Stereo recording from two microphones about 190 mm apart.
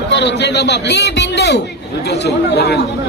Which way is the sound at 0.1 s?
65° left (ahead or behind).